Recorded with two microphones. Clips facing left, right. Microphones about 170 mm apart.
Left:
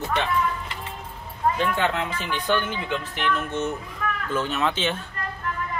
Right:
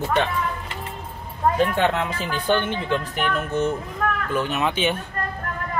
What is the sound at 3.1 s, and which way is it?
Speech, 40° right (ahead or behind).